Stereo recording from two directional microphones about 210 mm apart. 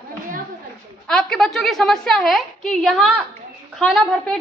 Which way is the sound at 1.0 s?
Centre (ahead or behind).